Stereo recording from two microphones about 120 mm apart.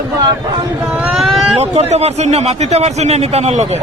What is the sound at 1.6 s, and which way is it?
A man's voice, 65° right (ahead or behind).